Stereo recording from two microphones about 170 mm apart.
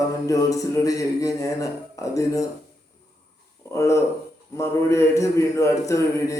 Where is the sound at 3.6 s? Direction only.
15° left (ahead or behind).